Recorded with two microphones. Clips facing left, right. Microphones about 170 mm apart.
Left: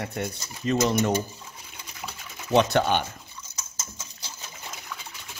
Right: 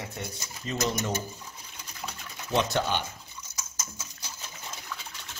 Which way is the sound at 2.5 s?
60° left (ahead or behind).